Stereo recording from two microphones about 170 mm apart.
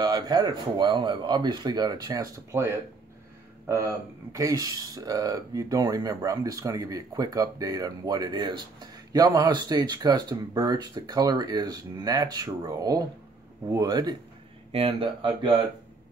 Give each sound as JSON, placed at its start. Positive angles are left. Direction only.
{"t": 0.0, "sound": "a man's voice", "side_deg": -25}
{"t": 14.7, "sound": "speech", "side_deg": -35}